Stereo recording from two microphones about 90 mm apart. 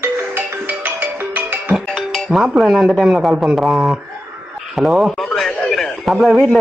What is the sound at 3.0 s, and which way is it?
Speech, 5° right (ahead or behind).